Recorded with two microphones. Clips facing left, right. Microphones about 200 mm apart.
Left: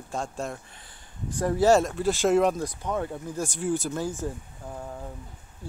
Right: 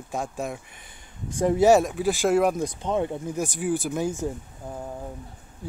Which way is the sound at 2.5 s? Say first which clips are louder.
Right 4 dB; 20° right (ahead or behind).